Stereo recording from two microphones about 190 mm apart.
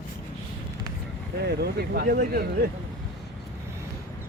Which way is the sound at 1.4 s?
55° right (ahead or behind).